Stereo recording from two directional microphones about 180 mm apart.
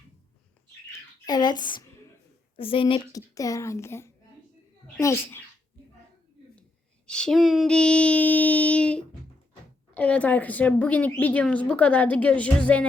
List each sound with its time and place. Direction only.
1.2 s a woman's voice: 20° left (ahead or behind)
7.1 s female singing: 5° left (ahead or behind)
9.9 s a woman's voice: 5° left (ahead or behind)